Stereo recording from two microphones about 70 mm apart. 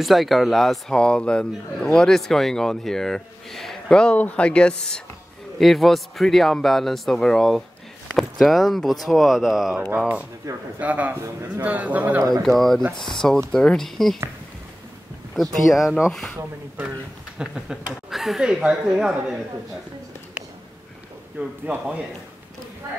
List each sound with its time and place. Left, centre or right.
0.0 s a man's voice: centre
5.6 s a man's voice: centre
10.8 s speech: right
12.4 s a man's voice: centre
15.3 s a man's voice: centre
17.4 s a woman's voice: centre
21.4 s a woman's voice: centre